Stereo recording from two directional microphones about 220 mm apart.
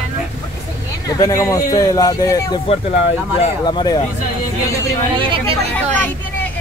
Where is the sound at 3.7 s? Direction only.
20° left (ahead or behind).